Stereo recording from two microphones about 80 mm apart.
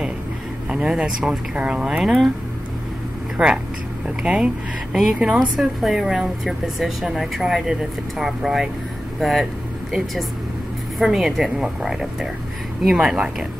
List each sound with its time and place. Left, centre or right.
0.7 s speech: centre
3.4 s speech: centre
5.6 s speech: centre
11.0 s speech: centre